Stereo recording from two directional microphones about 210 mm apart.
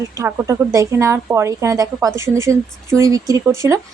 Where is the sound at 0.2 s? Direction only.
15° right (ahead or behind).